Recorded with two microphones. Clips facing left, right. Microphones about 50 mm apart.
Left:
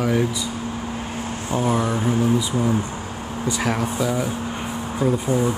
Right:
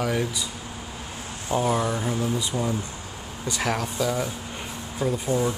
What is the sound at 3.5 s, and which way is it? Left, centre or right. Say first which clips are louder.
Speech: left 3 dB; centre.